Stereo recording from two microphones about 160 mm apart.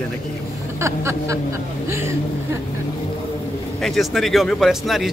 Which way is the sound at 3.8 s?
Centre (ahead or behind).